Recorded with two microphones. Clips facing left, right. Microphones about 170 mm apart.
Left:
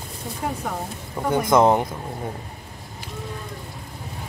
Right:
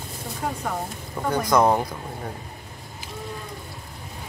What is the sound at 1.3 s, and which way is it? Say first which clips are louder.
Speech: left 2 dB; 25° left (ahead or behind).